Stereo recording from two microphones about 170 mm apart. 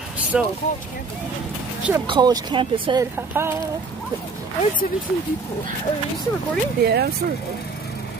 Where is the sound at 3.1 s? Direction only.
15° right (ahead or behind).